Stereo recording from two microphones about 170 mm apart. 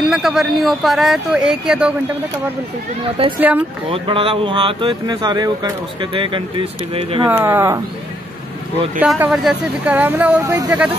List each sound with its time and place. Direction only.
0.0 s speech: centre (ahead or behind)
3.0 s a woman's voice: 30° right (ahead or behind)
3.3 s speech: 10° right (ahead or behind)
3.9 s speech: 30° right (ahead or behind)
7.2 s speech: 10° right (ahead or behind)
9.2 s speech: 5° right (ahead or behind)